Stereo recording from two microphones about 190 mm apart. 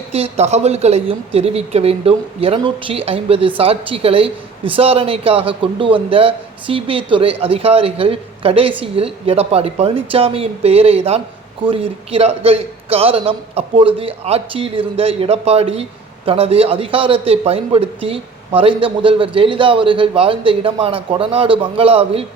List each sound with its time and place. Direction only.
0.1 s a man's voice: 35° right (ahead or behind)